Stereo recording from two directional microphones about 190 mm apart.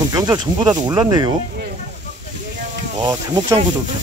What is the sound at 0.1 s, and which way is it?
Speech, 20° right (ahead or behind).